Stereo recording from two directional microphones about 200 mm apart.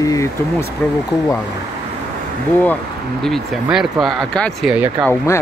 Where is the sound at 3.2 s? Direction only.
Centre (ahead or behind).